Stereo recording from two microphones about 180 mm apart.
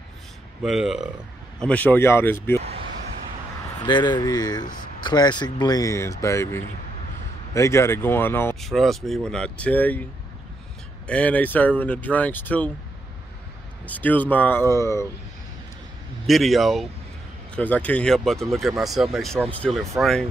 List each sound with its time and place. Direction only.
0.6 s speech: centre (ahead or behind)
1.6 s speech: 10° left (ahead or behind)
3.8 s speech: 25° left (ahead or behind)
8.5 s speech: centre (ahead or behind)
11.1 s speech: 5° left (ahead or behind)
13.8 s speech: 10° left (ahead or behind)
16.3 s speech: centre (ahead or behind)